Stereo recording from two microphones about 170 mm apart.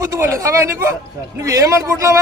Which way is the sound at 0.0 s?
15° right (ahead or behind).